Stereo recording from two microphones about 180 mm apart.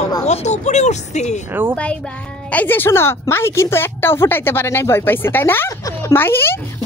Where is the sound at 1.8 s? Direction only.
5° left (ahead or behind).